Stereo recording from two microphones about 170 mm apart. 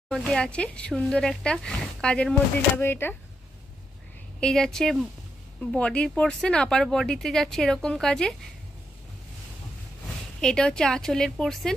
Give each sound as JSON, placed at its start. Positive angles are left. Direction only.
{"t": 0.1, "sound": "speech", "side_deg": 5}
{"t": 4.4, "sound": "speech", "side_deg": 5}
{"t": 10.4, "sound": "speech", "side_deg": 5}